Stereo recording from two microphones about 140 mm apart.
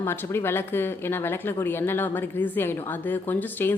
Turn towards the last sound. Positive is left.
turn(degrees=15)  # may be behind; listen again after turning